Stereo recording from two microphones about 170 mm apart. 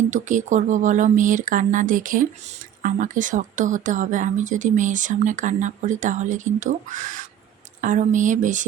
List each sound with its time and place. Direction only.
0.1 s speech: 45° right (ahead or behind)